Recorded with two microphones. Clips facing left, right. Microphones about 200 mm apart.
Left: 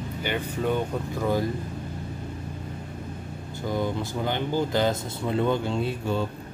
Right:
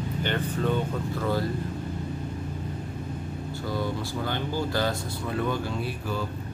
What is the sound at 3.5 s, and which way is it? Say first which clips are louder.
Speech: left 3 dB; 20° left (ahead or behind).